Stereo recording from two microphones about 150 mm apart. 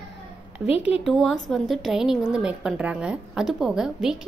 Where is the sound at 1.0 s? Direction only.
Centre (ahead or behind).